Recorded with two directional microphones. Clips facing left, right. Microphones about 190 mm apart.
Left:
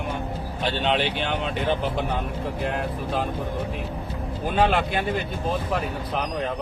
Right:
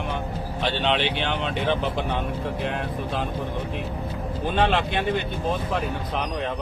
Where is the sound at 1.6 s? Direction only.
5° left (ahead or behind).